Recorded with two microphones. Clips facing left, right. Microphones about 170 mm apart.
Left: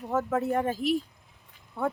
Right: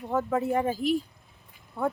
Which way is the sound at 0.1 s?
Centre (ahead or behind).